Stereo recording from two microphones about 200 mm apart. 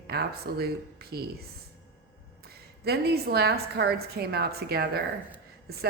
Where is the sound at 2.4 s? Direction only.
50° right (ahead or behind).